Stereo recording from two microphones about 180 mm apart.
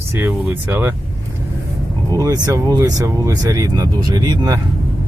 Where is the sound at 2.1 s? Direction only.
20° right (ahead or behind).